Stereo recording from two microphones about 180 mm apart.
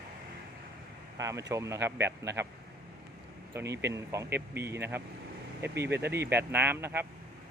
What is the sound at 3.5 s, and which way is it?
Speech, 15° right (ahead or behind).